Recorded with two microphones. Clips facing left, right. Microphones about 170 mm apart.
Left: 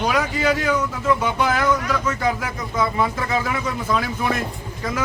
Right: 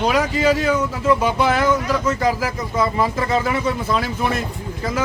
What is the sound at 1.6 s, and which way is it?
Speech, 25° right (ahead or behind).